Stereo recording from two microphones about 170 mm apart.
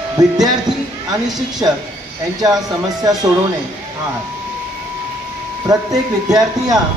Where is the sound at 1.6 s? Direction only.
25° right (ahead or behind).